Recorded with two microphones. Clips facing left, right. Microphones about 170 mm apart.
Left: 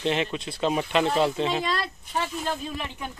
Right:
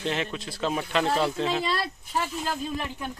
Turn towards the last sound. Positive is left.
turn(degrees=-5)  # may be behind; listen again after turning